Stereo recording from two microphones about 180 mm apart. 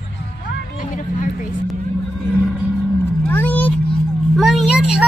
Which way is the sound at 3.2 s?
10° left (ahead or behind).